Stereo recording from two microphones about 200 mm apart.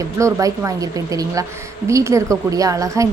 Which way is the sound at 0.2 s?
15° right (ahead or behind).